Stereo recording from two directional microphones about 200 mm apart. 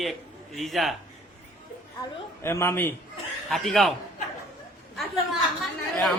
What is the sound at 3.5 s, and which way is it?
Speech, centre (ahead or behind).